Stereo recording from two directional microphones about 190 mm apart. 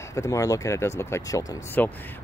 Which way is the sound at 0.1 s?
15° left (ahead or behind).